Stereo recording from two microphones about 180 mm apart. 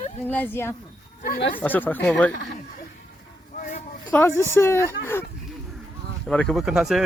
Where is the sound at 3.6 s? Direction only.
45° left (ahead or behind).